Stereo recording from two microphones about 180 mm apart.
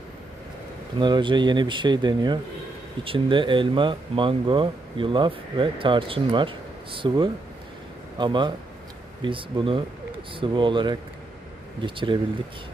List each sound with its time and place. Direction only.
0.9 s speech: 25° right (ahead or behind)